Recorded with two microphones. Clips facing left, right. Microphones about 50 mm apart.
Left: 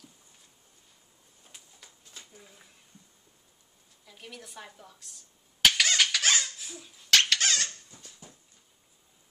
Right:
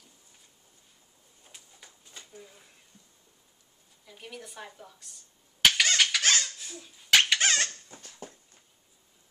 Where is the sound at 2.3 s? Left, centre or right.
Centre.